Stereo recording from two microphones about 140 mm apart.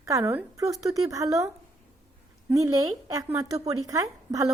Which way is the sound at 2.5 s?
25° right (ahead or behind).